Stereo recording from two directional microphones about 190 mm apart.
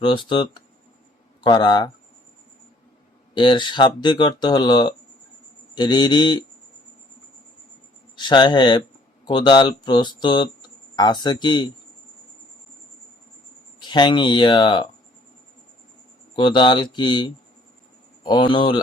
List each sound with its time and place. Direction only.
0.0 s speech: 25° left (ahead or behind)
3.3 s speech: 25° left (ahead or behind)
8.1 s speech: 25° left (ahead or behind)
13.8 s speech: 25° left (ahead or behind)
16.3 s speech: 25° left (ahead or behind)